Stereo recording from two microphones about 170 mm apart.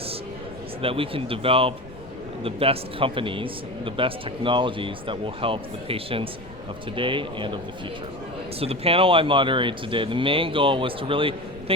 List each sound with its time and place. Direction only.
0.8 s speech: 30° right (ahead or behind)